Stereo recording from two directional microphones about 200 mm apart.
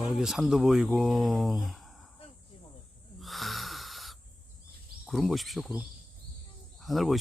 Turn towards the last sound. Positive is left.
turn(degrees=0)  # may be behind; listen again after turning